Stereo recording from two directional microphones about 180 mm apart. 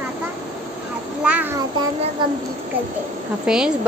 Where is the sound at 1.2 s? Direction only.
10° right (ahead or behind).